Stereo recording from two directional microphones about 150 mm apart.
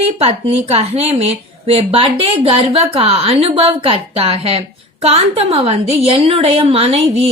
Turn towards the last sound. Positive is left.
turn(degrees=-40)  # may be behind; listen again after turning